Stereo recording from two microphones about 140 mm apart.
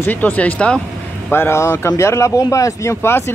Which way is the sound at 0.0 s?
10° left (ahead or behind).